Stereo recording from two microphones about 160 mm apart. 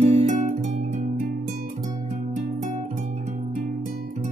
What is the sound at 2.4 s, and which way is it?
Music, 50° right (ahead or behind).